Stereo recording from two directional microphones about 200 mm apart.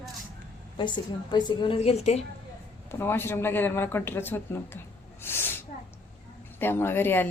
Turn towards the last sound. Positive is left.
turn(degrees=10)  # may be behind; listen again after turning